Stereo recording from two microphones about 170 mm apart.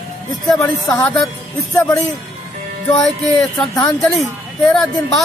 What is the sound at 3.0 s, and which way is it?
Speech, 5° left (ahead or behind).